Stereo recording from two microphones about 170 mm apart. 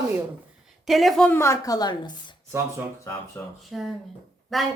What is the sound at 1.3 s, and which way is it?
Speech, 15° left (ahead or behind).